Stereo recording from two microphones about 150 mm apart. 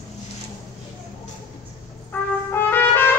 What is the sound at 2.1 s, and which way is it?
Trumpet, 15° left (ahead or behind).